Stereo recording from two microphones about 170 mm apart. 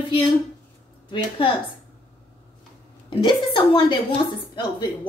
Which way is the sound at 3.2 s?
30° left (ahead or behind).